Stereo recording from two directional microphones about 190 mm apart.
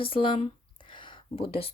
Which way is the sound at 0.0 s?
30° left (ahead or behind).